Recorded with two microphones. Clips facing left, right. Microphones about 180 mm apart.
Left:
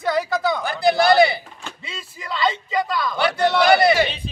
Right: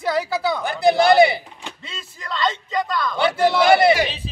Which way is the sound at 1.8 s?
5° left (ahead or behind).